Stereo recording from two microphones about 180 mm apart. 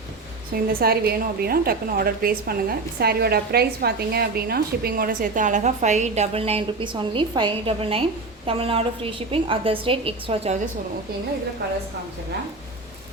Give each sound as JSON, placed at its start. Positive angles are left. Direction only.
{"t": 0.5, "sound": "a woman's voice", "side_deg": -55}